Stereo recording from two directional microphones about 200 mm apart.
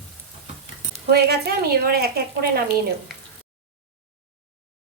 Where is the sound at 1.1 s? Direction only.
50° right (ahead or behind).